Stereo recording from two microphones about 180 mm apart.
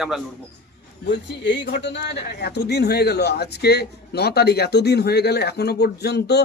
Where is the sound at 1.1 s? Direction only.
80° left.